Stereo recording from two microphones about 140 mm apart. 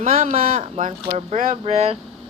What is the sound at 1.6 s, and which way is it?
Speech, 50° right (ahead or behind).